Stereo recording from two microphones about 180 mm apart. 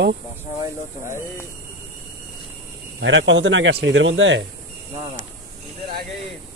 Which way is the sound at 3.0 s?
90° right.